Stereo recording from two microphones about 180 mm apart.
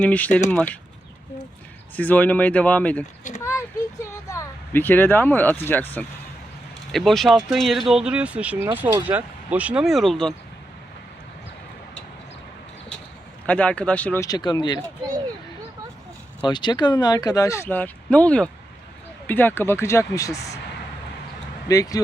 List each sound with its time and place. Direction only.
0.0 s speech: 10° left (ahead or behind)
2.0 s speech: 10° left (ahead or behind)
4.0 s speech: 15° left (ahead or behind)
13.5 s speech: 5° left (ahead or behind)
14.3 s speech: 20° left (ahead or behind)
16.4 s speech: 25° left (ahead or behind)
21.7 s speech: 20° left (ahead or behind)